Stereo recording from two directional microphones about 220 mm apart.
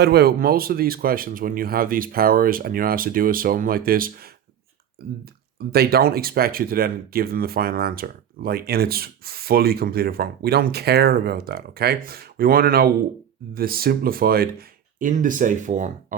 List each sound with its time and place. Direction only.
0.0 s speech: 45° right (ahead or behind)